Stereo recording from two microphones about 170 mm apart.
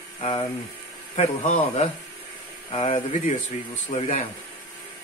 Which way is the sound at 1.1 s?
40° left (ahead or behind).